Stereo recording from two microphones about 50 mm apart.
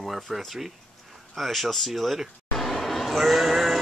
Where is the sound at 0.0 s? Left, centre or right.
Centre.